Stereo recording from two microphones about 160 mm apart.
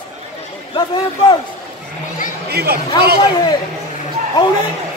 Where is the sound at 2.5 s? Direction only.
85° right.